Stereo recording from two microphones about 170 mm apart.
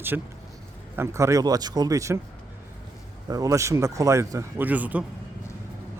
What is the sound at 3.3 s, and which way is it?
A man's voice, 20° right (ahead or behind).